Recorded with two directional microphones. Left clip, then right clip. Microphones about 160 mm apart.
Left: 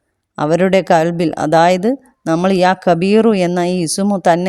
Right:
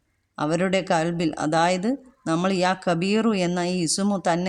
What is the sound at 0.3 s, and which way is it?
A woman's voice, 40° left (ahead or behind).